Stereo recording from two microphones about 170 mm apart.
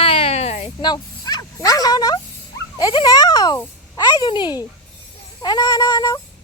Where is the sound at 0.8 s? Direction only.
25° left (ahead or behind).